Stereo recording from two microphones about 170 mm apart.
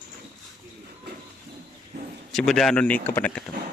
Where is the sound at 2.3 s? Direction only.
Centre (ahead or behind).